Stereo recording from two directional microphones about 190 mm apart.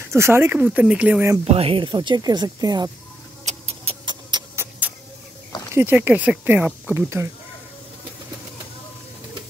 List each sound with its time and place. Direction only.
0.1 s speech: 15° right (ahead or behind)
1.4 s speech: 30° right (ahead or behind)
3.4 s a sound: 35° right (ahead or behind)
4.6 s vehicle: 10° right (ahead or behind)
5.8 s speech: 10° right (ahead or behind)